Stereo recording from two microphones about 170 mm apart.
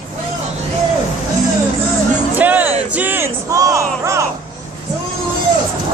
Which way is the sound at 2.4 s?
10° right (ahead or behind).